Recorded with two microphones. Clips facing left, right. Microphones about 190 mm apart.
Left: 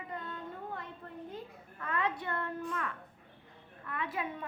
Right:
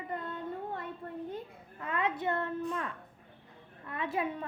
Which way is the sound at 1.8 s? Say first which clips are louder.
Right 2 dB; 20° right (ahead or behind).